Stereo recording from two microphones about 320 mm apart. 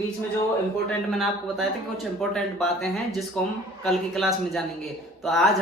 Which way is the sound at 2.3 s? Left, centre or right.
Centre.